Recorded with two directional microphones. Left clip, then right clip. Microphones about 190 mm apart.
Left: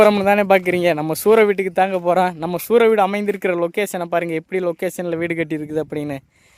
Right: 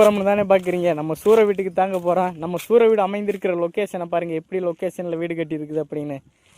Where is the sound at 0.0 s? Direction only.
40° left (ahead or behind).